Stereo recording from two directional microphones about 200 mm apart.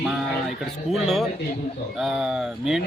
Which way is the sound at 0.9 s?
Centre (ahead or behind).